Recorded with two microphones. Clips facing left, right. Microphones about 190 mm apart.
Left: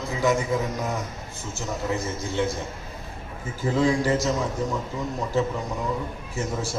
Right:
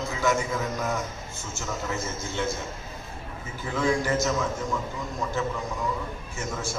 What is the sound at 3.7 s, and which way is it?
Speech, 35° left (ahead or behind).